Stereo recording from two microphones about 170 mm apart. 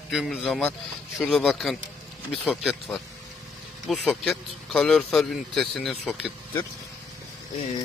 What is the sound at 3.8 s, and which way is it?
A man's voice, centre (ahead or behind).